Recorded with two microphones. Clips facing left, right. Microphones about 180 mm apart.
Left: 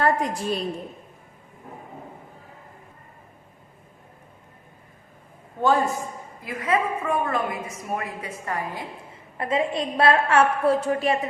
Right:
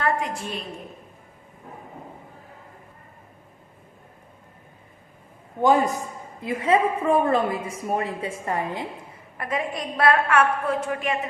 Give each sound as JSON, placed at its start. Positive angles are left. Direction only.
{"t": 0.0, "sound": "a woman's voice", "side_deg": 35}
{"t": 5.6, "sound": "a man's voice", "side_deg": -15}
{"t": 6.4, "sound": "a woman's voice", "side_deg": -25}
{"t": 9.4, "sound": "a woman's voice", "side_deg": 25}